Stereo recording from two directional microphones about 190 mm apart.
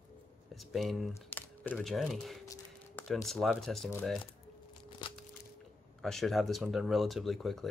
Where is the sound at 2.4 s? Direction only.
20° left (ahead or behind).